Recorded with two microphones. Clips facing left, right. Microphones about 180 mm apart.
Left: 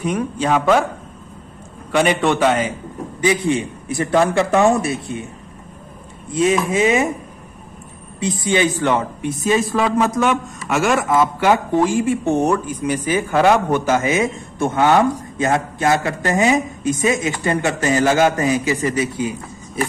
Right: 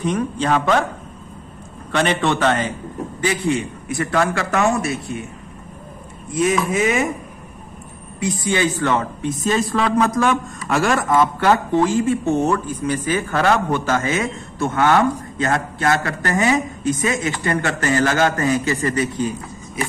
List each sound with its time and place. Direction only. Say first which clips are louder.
0.0 s speech: even; 10° left (ahead or behind)
1.9 s a man's voice: left 3 dB; 10° left (ahead or behind); by 5.2 s 25° left (ahead or behind)
6.4 s a man's voice: left 2 dB; 25° left (ahead or behind)
8.2 s speech: left 2 dB; 20° left (ahead or behind)